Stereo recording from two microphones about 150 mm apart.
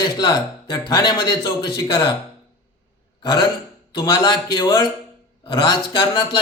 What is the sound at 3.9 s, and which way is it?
A man's voice, 30° left (ahead or behind).